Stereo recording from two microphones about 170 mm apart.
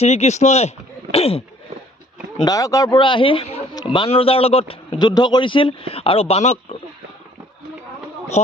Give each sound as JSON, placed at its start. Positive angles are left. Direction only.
{"t": 0.0, "sound": "a man's voice", "side_deg": 40}
{"t": 2.4, "sound": "a man's voice", "side_deg": 20}